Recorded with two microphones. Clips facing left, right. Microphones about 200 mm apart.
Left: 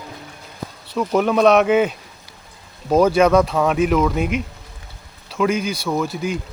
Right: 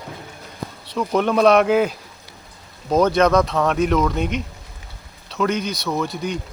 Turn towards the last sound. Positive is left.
turn(degrees=5)  # may be behind; listen again after turning